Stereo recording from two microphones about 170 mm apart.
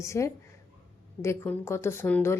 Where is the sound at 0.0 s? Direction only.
20° left (ahead or behind).